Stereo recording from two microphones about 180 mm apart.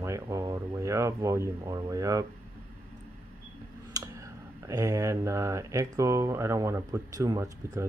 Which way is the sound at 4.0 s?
20° right (ahead or behind).